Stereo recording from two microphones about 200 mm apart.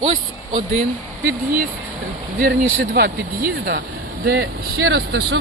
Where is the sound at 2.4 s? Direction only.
50° right (ahead or behind).